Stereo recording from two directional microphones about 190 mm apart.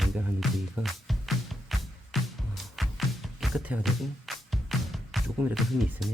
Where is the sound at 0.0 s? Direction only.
Centre (ahead or behind).